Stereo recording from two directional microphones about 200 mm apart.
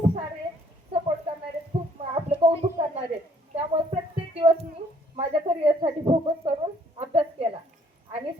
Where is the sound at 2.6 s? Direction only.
20° right (ahead or behind).